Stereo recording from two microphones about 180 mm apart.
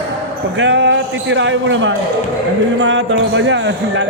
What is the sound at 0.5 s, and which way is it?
Speech, 90° right.